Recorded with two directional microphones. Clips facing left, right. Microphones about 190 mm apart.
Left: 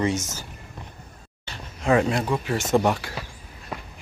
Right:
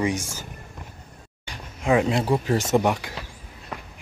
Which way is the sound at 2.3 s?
35° right (ahead or behind).